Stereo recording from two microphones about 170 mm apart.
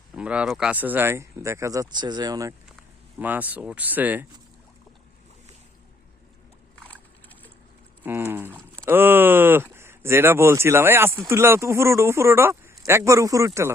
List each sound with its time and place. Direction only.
0.2 s speech: 5° right (ahead or behind)
3.2 s speech: 10° right (ahead or behind)
8.0 s speech: 10° right (ahead or behind)